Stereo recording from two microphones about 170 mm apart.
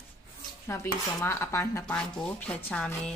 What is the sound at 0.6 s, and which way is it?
Speech, 15° left (ahead or behind).